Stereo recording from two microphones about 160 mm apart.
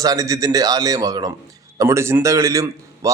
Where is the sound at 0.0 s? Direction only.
20° right (ahead or behind).